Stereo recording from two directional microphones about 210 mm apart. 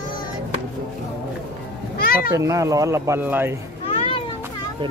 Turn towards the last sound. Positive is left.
turn(degrees=30)  # may be behind; listen again after turning